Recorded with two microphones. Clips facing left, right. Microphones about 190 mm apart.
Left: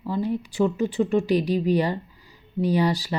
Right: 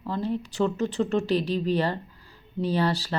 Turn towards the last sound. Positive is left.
turn(degrees=15)  # may be behind; listen again after turning